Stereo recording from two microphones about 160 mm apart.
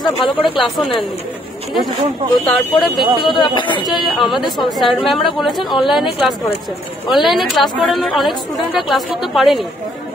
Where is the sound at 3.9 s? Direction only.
Centre (ahead or behind).